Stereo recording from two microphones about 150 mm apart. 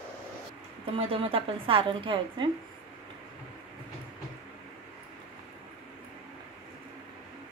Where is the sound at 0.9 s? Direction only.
40° right (ahead or behind).